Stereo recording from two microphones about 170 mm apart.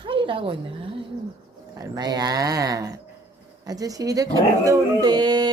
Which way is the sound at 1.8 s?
25° right (ahead or behind).